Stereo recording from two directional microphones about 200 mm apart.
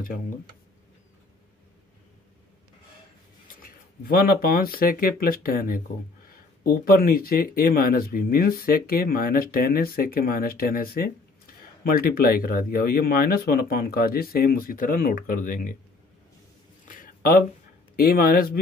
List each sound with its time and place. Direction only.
3.4 s speech: 45° left (ahead or behind)
16.8 s a sound: 45° left (ahead or behind)
17.9 s speech: 50° left (ahead or behind)